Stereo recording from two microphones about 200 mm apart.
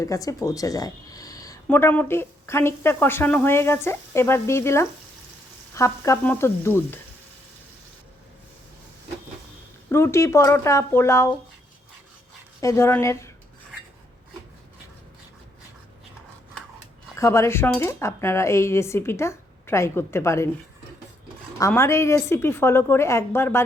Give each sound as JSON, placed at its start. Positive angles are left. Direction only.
{"t": 0.0, "sound": "speech", "side_deg": 15}
{"t": 9.9, "sound": "speech", "side_deg": 15}
{"t": 12.5, "sound": "speech", "side_deg": 15}
{"t": 17.2, "sound": "speech", "side_deg": 15}
{"t": 21.6, "sound": "speech", "side_deg": 15}